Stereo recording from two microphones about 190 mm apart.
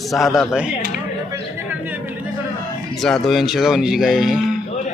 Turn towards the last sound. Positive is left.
turn(degrees=0)  # may be behind; listen again after turning